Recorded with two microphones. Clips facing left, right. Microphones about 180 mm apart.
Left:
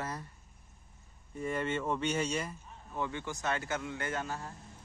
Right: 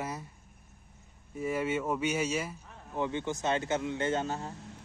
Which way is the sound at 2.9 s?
20° right (ahead or behind).